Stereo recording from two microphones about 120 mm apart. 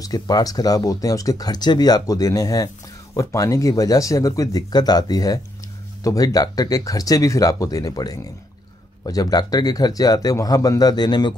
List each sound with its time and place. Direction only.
0.0 s speech: 30° left (ahead or behind)